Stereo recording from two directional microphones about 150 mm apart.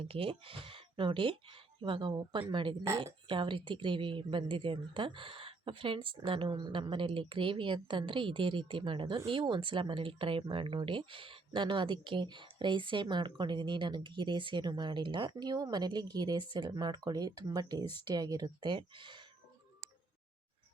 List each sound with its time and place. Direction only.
0.0 s speech: 40° right (ahead or behind)